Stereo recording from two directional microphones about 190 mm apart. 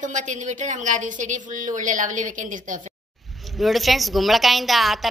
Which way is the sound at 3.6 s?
Centre (ahead or behind).